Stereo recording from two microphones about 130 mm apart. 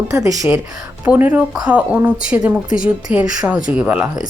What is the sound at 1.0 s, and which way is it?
Speech, 10° right (ahead or behind).